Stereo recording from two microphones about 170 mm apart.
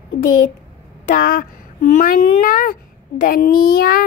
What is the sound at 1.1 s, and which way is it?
A woman's voice, 60° left (ahead or behind).